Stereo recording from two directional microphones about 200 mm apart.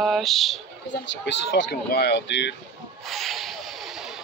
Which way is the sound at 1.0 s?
60° left (ahead or behind).